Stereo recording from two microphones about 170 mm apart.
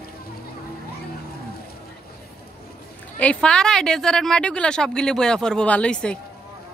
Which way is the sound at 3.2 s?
5° left (ahead or behind).